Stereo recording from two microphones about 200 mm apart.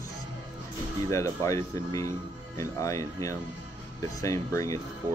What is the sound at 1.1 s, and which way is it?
Speech, 15° left (ahead or behind).